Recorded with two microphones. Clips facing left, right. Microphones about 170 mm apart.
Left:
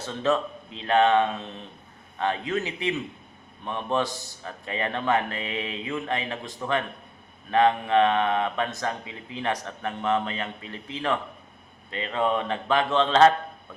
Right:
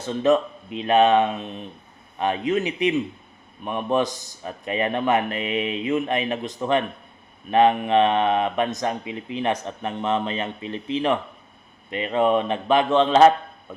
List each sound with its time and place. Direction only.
0.0 s a man's voice: 15° right (ahead or behind)